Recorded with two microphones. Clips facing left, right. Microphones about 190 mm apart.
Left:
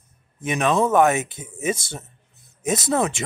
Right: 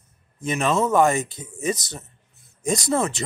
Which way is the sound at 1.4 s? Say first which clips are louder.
Even; 25° left (ahead or behind).